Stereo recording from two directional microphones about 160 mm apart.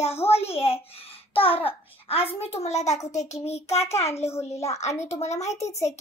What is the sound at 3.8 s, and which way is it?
Speech, 15° left (ahead or behind).